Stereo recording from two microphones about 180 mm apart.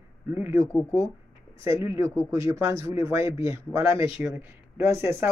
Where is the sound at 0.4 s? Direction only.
15° right (ahead or behind).